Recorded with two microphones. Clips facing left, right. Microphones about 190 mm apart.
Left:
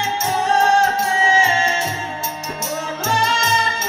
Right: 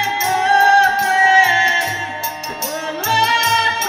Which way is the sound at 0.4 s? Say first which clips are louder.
Right 2 dB; 65° right (ahead or behind).